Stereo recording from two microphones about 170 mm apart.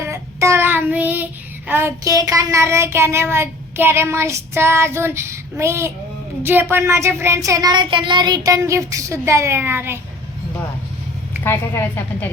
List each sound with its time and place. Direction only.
0.0 s child singing: 15° right (ahead or behind)
11.4 s speech: 15° left (ahead or behind)